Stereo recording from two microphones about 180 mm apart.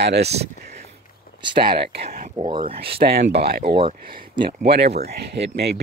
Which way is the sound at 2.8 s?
60° right (ahead or behind).